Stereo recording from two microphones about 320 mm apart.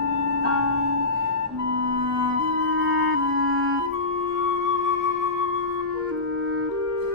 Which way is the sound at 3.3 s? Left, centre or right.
Right.